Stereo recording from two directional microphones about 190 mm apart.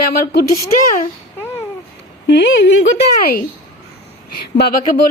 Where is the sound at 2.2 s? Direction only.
60° left (ahead or behind).